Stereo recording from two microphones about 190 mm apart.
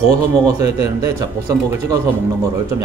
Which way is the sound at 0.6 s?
35° left (ahead or behind).